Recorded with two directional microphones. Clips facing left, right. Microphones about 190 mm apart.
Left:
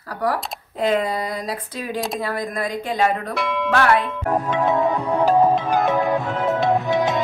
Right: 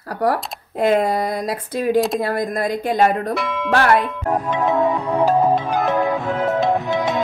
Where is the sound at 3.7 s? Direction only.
40° right (ahead or behind).